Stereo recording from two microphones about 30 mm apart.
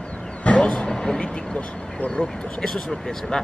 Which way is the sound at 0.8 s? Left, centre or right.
Centre.